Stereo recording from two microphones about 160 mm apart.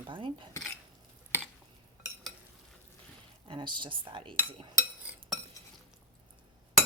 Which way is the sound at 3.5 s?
30° right (ahead or behind).